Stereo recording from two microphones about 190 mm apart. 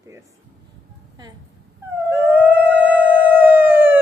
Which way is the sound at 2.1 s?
10° right (ahead or behind).